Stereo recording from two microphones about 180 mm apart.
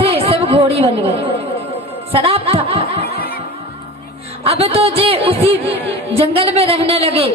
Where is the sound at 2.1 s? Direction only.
30° right (ahead or behind).